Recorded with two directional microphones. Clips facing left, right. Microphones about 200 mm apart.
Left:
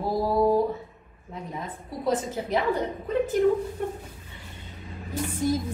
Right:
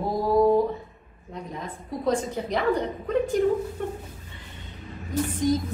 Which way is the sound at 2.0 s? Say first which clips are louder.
Right 1 dB; 5° left (ahead or behind).